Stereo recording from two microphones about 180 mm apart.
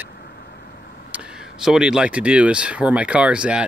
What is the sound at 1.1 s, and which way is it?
Speech, 5° right (ahead or behind).